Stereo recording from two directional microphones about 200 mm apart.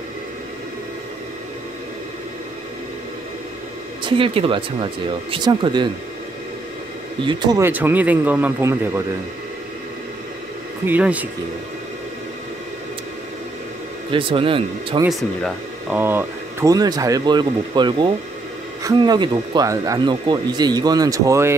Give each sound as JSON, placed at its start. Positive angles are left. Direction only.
{"t": 4.0, "sound": "speech", "side_deg": -25}
{"t": 7.2, "sound": "speech", "side_deg": -20}
{"t": 10.9, "sound": "speech", "side_deg": -5}
{"t": 14.1, "sound": "speech", "side_deg": -25}
{"t": 15.0, "sound": "speech", "side_deg": 0}
{"t": 16.0, "sound": "speech", "side_deg": -10}